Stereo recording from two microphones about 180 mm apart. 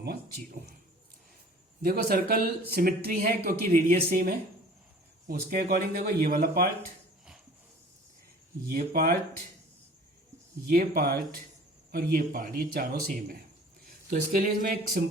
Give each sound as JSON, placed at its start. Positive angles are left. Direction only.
{"t": 1.8, "sound": "speech", "side_deg": -55}
{"t": 8.6, "sound": "speech", "side_deg": -55}
{"t": 10.7, "sound": "speech", "side_deg": -55}